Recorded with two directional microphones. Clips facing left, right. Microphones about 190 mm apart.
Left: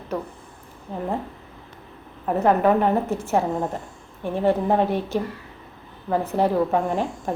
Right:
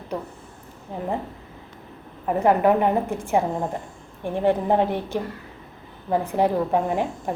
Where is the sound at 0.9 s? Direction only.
15° right (ahead or behind).